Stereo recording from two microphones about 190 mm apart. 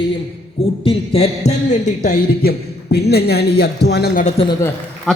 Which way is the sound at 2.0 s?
45° left (ahead or behind).